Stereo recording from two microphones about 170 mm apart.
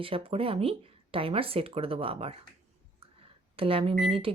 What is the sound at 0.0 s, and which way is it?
A woman's voice, 35° right (ahead or behind).